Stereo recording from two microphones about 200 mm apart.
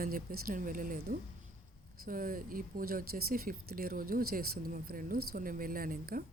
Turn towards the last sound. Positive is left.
turn(degrees=-45)  # may be behind; listen again after turning